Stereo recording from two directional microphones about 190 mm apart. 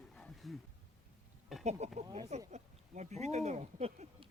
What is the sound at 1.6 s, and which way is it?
Speech, 35° right (ahead or behind).